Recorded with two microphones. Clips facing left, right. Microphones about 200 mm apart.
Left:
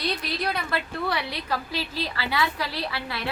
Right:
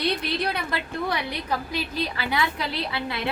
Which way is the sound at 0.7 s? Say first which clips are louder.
Even; 15° right (ahead or behind).